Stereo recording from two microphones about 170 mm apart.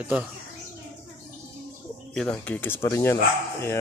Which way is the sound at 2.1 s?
5° left (ahead or behind).